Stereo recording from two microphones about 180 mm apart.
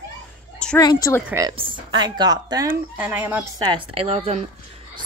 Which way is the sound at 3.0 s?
10° right (ahead or behind).